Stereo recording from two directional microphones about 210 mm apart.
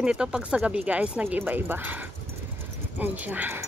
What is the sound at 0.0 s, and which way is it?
Speech, 5° right (ahead or behind).